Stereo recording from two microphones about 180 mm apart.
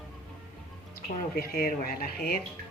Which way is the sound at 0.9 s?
55° left (ahead or behind).